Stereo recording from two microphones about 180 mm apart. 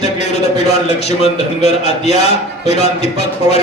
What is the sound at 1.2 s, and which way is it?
A man's voice, 35° left (ahead or behind).